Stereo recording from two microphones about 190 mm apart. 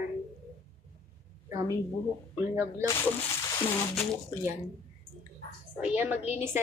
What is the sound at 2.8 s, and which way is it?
Speech, 15° left (ahead or behind).